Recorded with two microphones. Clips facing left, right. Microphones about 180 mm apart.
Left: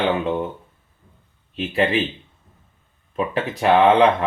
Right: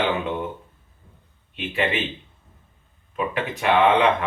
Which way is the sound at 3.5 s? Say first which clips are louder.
Left 3 dB; 40° left (ahead or behind).